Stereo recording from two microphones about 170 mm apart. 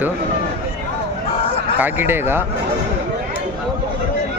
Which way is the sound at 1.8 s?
15° right (ahead or behind).